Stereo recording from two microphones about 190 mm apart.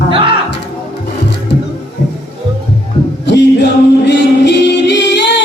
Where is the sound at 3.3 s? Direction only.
65° left (ahead or behind).